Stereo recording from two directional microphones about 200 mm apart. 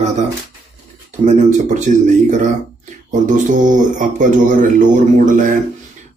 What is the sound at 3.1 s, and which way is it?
Speech, 40° right (ahead or behind).